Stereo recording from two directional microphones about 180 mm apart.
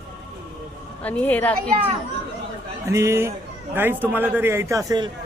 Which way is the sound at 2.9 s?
15° right (ahead or behind).